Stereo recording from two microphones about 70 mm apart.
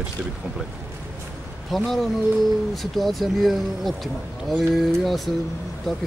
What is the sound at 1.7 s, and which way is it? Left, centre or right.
Speech, centre.